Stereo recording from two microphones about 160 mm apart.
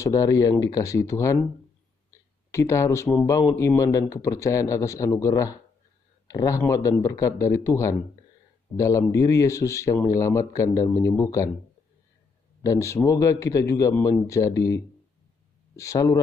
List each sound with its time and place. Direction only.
0.0 s speech: 20° left (ahead or behind)
2.0 s a sound: 20° left (ahead or behind)
3.5 s speech: 20° left (ahead or behind)
12.6 s speech: 20° left (ahead or behind)
13.9 s speech: 10° left (ahead or behind)
14.2 s speech: 20° left (ahead or behind)